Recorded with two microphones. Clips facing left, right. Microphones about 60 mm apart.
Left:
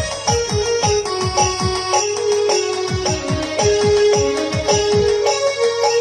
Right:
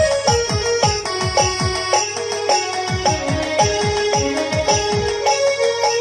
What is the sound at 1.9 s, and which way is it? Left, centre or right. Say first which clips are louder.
Music: left 5 dB; right.